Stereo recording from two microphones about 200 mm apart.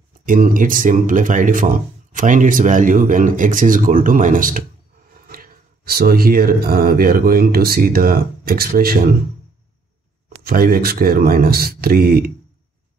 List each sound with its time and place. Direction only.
0.2 s speech: 40° right (ahead or behind)
10.4 s speech: 45° right (ahead or behind)